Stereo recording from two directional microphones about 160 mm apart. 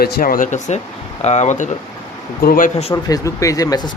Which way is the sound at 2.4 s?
65° left (ahead or behind).